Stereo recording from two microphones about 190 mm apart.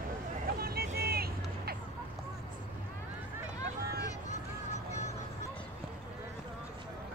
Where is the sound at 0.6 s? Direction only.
55° right (ahead or behind).